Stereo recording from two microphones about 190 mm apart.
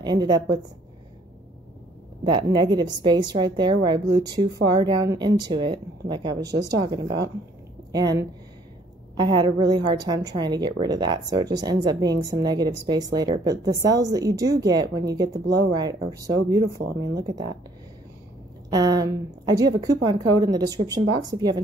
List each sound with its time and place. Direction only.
0.0 s a woman's voice: 20° right (ahead or behind)
2.3 s a woman's voice: 25° right (ahead or behind)
18.7 s a woman's voice: 20° right (ahead or behind)